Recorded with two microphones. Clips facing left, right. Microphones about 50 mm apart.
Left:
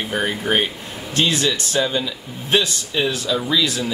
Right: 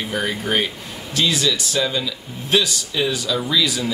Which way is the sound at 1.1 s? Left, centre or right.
Left.